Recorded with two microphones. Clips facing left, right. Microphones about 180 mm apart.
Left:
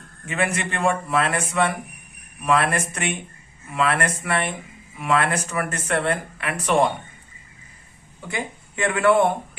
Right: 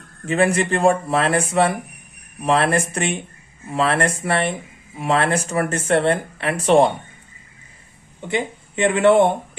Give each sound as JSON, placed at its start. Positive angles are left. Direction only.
{"t": 0.3, "sound": "speech", "side_deg": -35}
{"t": 8.2, "sound": "speech", "side_deg": -25}